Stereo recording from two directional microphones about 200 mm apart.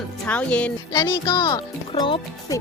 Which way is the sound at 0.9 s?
20° left (ahead or behind).